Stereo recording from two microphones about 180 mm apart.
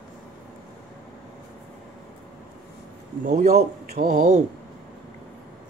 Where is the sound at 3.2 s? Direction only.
40° right (ahead or behind).